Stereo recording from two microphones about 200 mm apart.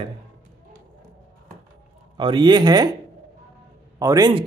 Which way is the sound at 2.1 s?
25° right (ahead or behind).